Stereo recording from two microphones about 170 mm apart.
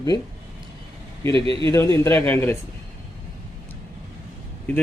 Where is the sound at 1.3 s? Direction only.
30° right (ahead or behind).